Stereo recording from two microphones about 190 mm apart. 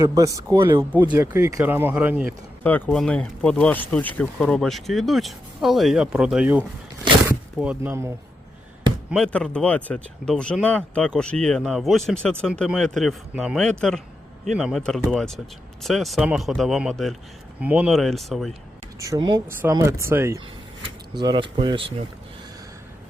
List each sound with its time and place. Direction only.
0.0 s speech: 20° right (ahead or behind)
2.6 s speech: 10° left (ahead or behind); by 8.1 s 10° right (ahead or behind)
9.0 s speech: 5° left (ahead or behind)
18.9 s speech: 15° right (ahead or behind)